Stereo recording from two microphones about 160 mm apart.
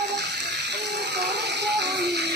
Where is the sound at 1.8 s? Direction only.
90° right.